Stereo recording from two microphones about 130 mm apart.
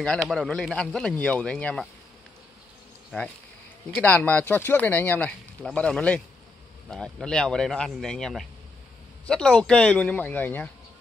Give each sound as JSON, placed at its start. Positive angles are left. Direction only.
{"t": 0.0, "sound": "speech", "side_deg": 5}
{"t": 3.1, "sound": "speech", "side_deg": 10}